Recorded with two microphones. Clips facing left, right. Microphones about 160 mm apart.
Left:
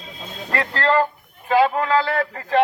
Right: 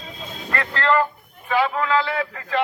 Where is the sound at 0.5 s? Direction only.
35° left (ahead or behind).